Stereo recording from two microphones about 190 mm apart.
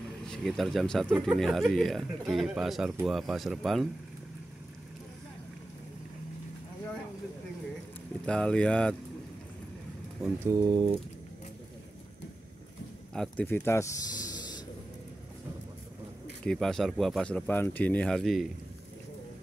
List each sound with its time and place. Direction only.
0.3 s speech: centre (ahead or behind)
8.3 s speech: 5° left (ahead or behind)
10.4 s speech: 20° right (ahead or behind)
13.1 s a sound: 5° left (ahead or behind)
13.5 s speech: 15° left (ahead or behind)
16.4 s speech: centre (ahead or behind)